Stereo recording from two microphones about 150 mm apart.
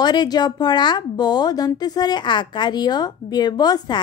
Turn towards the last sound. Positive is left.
turn(degrees=25)  # may be behind; listen again after turning